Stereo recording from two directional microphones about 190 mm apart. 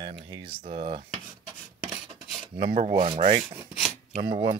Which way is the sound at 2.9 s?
30° right (ahead or behind).